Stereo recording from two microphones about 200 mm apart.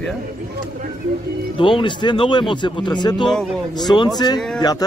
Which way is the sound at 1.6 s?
25° left (ahead or behind).